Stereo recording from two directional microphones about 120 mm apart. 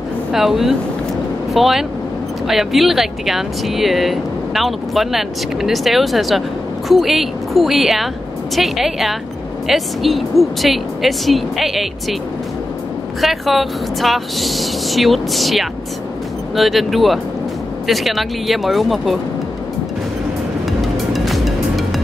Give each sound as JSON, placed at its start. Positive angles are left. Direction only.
{"t": 0.3, "sound": "speech", "side_deg": 0}
{"t": 13.2, "sound": "speech", "side_deg": 0}
{"t": 20.8, "sound": "music", "side_deg": 0}